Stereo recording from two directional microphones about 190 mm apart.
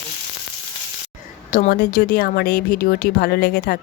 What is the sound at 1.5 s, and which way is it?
Speech, 45° left (ahead or behind).